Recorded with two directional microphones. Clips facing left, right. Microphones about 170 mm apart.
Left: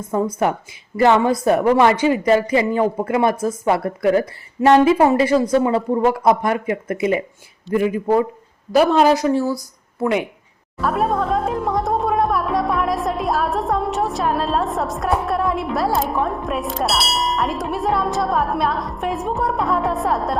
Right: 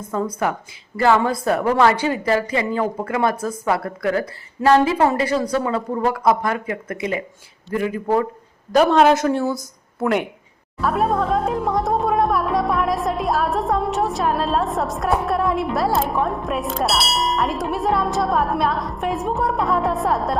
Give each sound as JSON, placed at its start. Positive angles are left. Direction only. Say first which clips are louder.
{"t": 0.1, "sound": "speech", "louder": "left 3 dB", "side_deg": 25}
{"t": 8.7, "sound": "speech", "louder": "even", "side_deg": 5}